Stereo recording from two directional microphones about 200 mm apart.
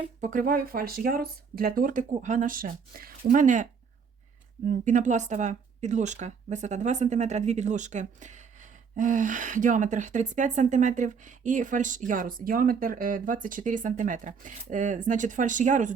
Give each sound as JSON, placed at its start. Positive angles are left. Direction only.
{"t": 0.2, "sound": "speech", "side_deg": -40}